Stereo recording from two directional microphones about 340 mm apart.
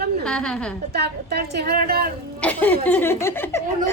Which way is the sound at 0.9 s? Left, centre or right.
Right.